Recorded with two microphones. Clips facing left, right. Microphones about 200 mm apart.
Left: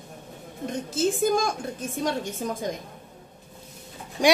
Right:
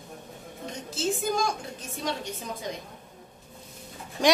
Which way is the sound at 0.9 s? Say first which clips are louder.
Left 5 dB; 50° left (ahead or behind).